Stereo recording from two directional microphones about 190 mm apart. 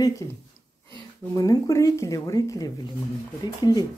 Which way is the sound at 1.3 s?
20° left (ahead or behind).